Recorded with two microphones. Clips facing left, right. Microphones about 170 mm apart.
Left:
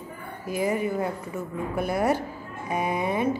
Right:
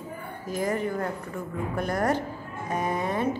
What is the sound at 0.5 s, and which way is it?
A woman's voice, 10° left (ahead or behind).